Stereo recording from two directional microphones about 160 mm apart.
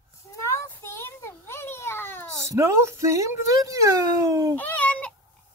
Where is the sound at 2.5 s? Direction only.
15° right (ahead or behind).